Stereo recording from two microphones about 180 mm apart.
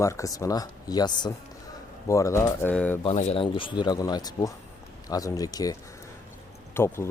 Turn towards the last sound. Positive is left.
turn(degrees=15)  # may be behind; listen again after turning